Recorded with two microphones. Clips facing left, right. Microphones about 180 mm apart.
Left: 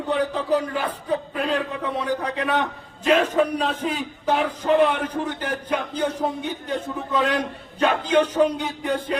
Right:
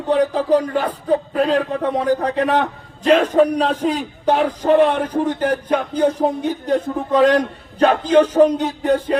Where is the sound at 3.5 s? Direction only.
35° right (ahead or behind).